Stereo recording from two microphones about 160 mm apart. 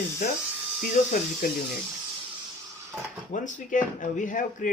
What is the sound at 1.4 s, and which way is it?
Speech, 65° left (ahead or behind).